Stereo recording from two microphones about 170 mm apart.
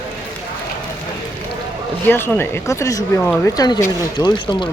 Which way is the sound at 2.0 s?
15° left (ahead or behind).